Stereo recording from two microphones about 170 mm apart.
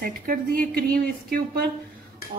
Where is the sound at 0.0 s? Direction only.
55° right (ahead or behind).